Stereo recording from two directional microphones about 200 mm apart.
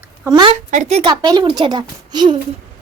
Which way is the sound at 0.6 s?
35° right (ahead or behind).